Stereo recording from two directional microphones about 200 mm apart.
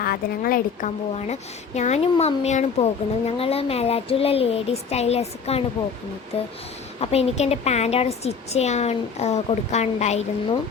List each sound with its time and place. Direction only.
0.0 s a woman's voice: 45° left (ahead or behind)
1.3 s speech: 35° left (ahead or behind)
7.0 s speech: 30° left (ahead or behind)